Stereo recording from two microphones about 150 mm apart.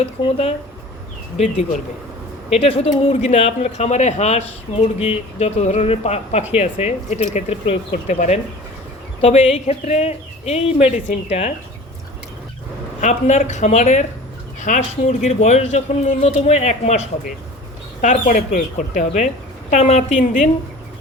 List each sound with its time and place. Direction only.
0.0 s speech: 40° left (ahead or behind)
13.0 s speech: 50° left (ahead or behind)
15.0 s speech: 45° left (ahead or behind)